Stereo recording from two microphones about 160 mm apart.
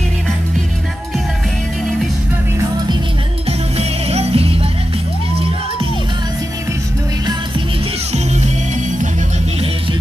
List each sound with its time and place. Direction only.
3.4 s music: 40° right (ahead or behind)